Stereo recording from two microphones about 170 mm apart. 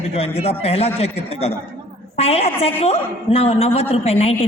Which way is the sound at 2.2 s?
35° left (ahead or behind).